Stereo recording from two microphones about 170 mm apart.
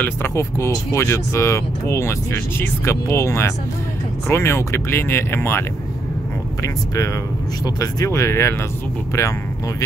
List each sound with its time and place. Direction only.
0.0 s speech: 15° left (ahead or behind)
7.6 s speech: 20° left (ahead or behind)